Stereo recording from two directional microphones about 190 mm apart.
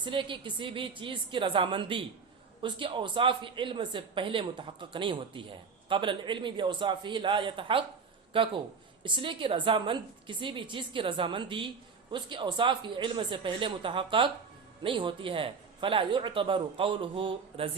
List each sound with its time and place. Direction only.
0.0 s a woman's voice: 25° right (ahead or behind)